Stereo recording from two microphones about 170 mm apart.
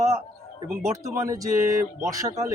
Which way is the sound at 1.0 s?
20° right (ahead or behind).